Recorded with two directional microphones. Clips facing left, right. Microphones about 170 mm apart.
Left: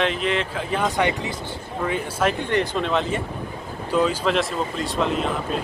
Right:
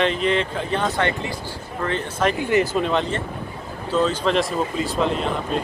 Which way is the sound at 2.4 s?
5° right (ahead or behind).